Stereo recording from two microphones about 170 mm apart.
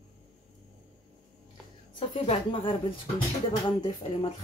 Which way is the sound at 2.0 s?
35° left (ahead or behind).